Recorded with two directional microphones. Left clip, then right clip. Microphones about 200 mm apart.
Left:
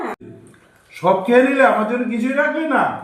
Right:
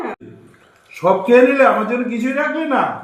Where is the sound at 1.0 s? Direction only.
Centre (ahead or behind).